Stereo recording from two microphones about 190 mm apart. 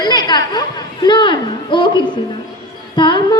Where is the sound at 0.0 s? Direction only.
20° left (ahead or behind).